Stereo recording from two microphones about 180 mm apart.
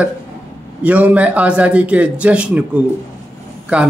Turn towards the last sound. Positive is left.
turn(degrees=-5)  # may be behind; listen again after turning